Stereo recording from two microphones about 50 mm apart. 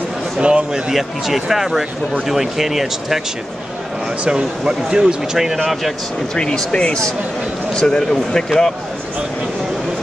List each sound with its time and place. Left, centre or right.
0.4 s a man's voice: right
0.9 s speech: centre
4.2 s speech: centre
6.3 s speech: centre